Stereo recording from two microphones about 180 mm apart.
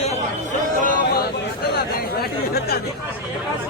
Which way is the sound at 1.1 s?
60° left (ahead or behind).